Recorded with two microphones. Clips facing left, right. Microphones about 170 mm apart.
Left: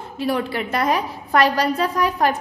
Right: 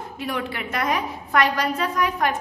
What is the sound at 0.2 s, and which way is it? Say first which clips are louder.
A woman's voice: left 6 dB; 35° left (ahead or behind).